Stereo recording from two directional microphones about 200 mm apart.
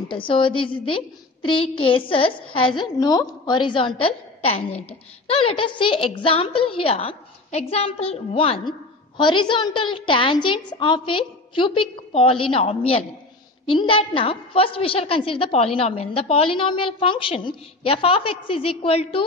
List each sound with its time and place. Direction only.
0.1 s a woman's voice: 25° left (ahead or behind)